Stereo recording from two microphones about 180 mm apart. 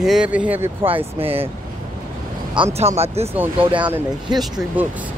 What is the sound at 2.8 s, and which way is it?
Speech, 35° right (ahead or behind).